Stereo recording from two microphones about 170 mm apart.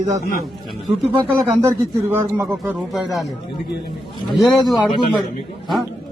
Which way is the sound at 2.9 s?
Centre (ahead or behind).